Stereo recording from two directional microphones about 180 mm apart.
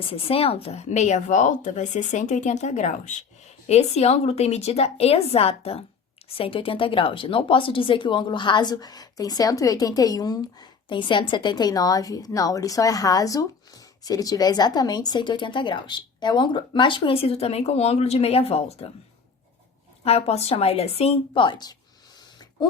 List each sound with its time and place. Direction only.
0.1 s speech: 30° left (ahead or behind)
20.1 s speech: 35° left (ahead or behind)